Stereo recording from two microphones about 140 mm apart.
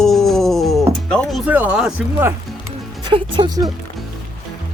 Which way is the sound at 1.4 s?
10° right (ahead or behind).